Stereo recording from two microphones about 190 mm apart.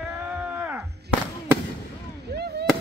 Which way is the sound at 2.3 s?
60° right (ahead or behind).